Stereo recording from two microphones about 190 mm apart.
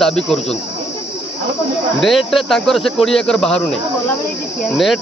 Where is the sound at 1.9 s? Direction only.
Centre (ahead or behind).